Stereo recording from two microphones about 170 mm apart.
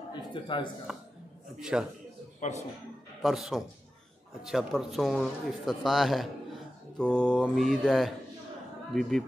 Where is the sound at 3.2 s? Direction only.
Centre (ahead or behind).